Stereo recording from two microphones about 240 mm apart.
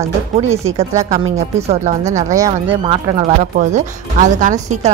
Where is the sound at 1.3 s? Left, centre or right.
Right.